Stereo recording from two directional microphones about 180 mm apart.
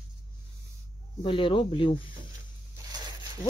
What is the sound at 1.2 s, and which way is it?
Speech, 30° left (ahead or behind).